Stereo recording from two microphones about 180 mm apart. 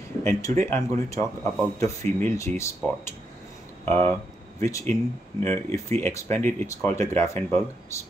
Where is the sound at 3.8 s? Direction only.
10° left (ahead or behind).